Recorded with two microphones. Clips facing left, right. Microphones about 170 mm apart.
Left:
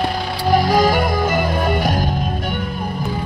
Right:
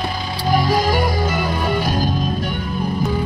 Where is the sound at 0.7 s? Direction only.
55° left (ahead or behind).